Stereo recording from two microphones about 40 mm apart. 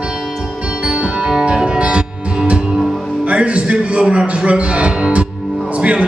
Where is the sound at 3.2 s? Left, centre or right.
Right.